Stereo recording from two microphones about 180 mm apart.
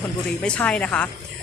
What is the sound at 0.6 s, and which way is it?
Speech, 10° left (ahead or behind).